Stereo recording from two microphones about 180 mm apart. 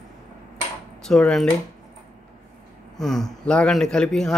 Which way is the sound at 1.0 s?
5° left (ahead or behind).